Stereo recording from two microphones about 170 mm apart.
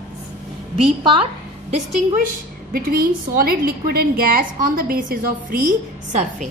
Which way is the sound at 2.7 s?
60° right (ahead or behind).